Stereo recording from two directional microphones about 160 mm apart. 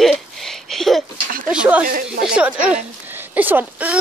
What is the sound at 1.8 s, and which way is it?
Speech, 65° right (ahead or behind).